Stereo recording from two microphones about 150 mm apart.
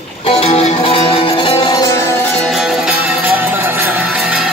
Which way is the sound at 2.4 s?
Centre (ahead or behind).